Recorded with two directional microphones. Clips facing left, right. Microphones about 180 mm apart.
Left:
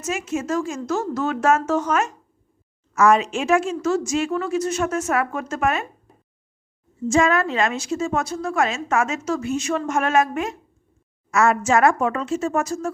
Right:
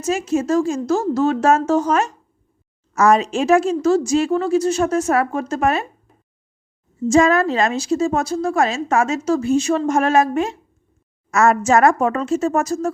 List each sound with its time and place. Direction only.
0.0 s a woman's voice: 35° right (ahead or behind)
7.1 s a woman's voice: 35° right (ahead or behind)
11.3 s a woman's voice: 45° right (ahead or behind)